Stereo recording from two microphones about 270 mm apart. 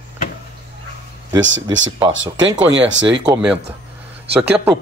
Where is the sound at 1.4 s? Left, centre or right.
Right.